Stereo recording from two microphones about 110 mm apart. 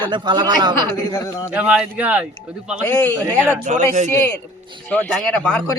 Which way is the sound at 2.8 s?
15° left (ahead or behind).